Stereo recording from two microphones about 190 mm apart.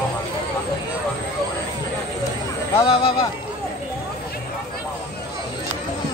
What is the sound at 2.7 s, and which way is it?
Speech, 30° left (ahead or behind).